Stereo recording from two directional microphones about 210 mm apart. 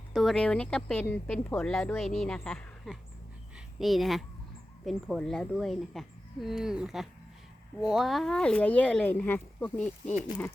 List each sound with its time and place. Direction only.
0.1 s speech: centre (ahead or behind)